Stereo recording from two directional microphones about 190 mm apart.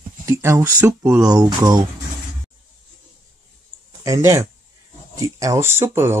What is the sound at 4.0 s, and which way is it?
Speech, 15° right (ahead or behind).